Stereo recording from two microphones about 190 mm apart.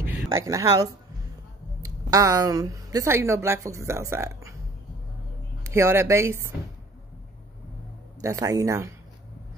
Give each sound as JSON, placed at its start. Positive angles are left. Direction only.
{"t": 0.0, "sound": "a woman's voice", "side_deg": -15}
{"t": 5.6, "sound": "speech", "side_deg": -15}
{"t": 8.2, "sound": "speech", "side_deg": -15}